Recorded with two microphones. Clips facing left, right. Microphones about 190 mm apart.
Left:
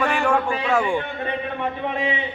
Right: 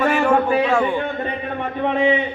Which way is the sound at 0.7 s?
10° left (ahead or behind).